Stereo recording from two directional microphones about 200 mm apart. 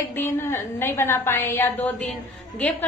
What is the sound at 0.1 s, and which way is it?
A woman's voice, 10° left (ahead or behind).